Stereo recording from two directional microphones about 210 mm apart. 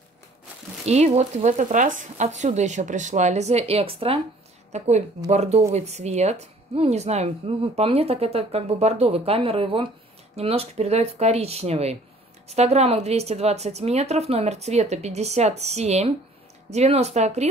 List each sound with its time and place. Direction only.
0.8 s a woman's voice: 30° right (ahead or behind)